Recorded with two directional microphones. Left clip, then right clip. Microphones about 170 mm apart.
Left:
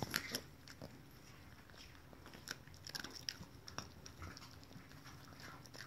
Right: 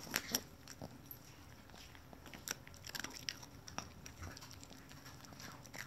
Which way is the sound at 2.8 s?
15° right (ahead or behind).